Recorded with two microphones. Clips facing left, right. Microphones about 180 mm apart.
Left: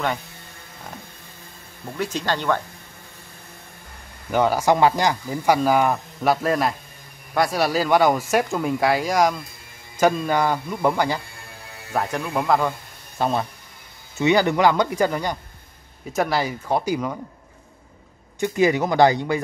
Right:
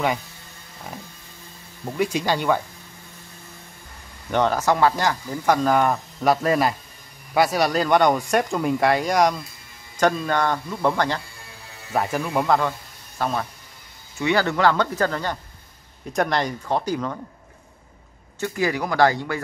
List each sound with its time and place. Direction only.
2.0 s speech: 10° right (ahead or behind)
4.3 s speech: 10° left (ahead or behind)
11.9 s speech: 5° right (ahead or behind)
13.2 s speech: 25° left (ahead or behind)
18.4 s speech: 20° left (ahead or behind)